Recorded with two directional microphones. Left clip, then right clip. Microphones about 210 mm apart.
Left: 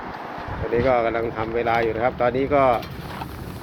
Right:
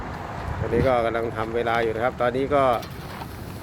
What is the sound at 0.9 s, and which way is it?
Speech, 5° right (ahead or behind).